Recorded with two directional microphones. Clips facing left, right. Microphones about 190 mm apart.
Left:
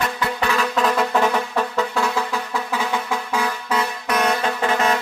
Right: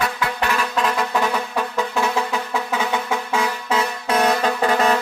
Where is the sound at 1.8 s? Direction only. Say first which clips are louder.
Right 2 dB; 20° right (ahead or behind).